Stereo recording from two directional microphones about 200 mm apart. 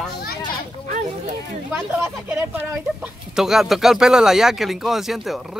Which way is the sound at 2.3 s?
10° right (ahead or behind).